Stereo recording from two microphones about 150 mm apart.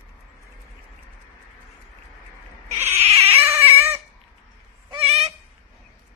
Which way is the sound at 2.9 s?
45° right (ahead or behind).